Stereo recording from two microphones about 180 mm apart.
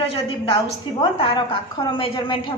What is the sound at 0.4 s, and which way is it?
A woman's voice, 30° left (ahead or behind).